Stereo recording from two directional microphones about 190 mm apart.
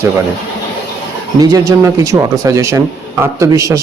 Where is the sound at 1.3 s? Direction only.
20° right (ahead or behind).